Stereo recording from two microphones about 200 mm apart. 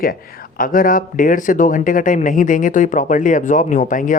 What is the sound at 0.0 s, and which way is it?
Speech, 45° left (ahead or behind).